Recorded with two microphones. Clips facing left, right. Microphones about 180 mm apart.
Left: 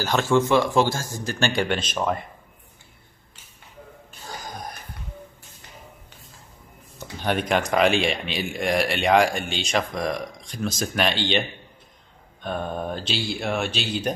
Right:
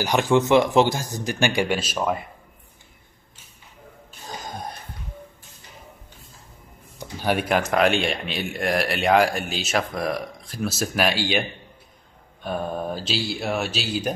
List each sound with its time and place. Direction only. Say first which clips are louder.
0.0 s speech: right 1 dB; 15° right (ahead or behind)
4.3 s a sound: right 2 dB; 25° right (ahead or behind)
7.0 s speech: right 1 dB; 10° right (ahead or behind)
12.4 s speech: right 1 dB; 5° right (ahead or behind)